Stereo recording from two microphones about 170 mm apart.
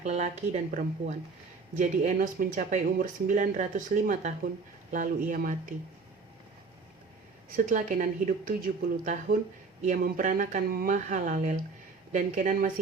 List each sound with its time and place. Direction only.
0.0 s speech: 40° right (ahead or behind)
7.5 s speech: 50° right (ahead or behind)